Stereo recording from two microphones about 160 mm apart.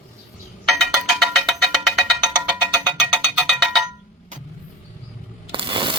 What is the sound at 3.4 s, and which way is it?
Cowbell, centre (ahead or behind).